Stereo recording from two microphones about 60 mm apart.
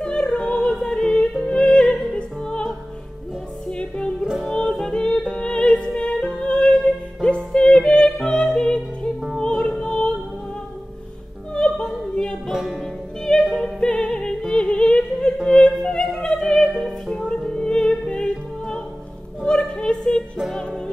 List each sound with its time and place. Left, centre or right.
0.0 s music: centre
11.5 s opera: centre
12.4 s music: centre
13.7 s music: centre
15.4 s opera: centre
15.8 s music: centre
19.4 s a sound: centre